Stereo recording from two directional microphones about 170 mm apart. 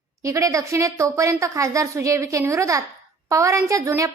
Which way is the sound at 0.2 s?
20° right (ahead or behind).